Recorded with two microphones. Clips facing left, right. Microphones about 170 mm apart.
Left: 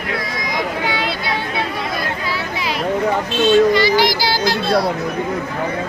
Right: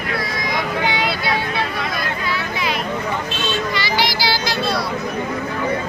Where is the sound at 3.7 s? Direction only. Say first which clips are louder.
Left 7 dB; 50° left (ahead or behind).